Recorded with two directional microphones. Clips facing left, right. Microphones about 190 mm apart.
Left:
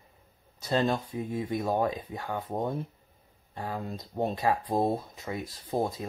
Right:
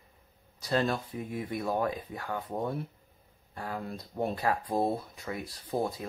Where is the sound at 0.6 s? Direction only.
25° left (ahead or behind).